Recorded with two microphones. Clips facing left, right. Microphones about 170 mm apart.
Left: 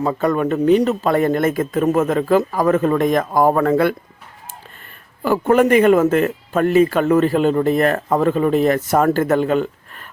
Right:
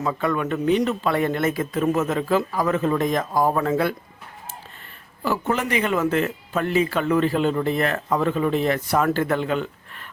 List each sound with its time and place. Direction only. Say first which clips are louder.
0.0 s a man's voice: left 6 dB; 40° left (ahead or behind); by 3.9 s 60° left (ahead or behind)
5.2 s a man's voice: left 9 dB; 50° left (ahead or behind)